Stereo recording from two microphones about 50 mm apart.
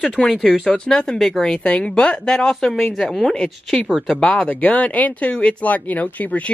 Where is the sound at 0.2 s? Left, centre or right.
Centre.